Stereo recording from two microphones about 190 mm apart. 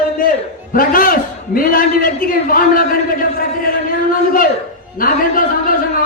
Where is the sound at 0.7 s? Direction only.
45° left (ahead or behind).